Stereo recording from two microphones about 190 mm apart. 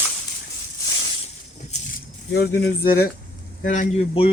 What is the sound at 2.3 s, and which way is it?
Speech, 55° left (ahead or behind).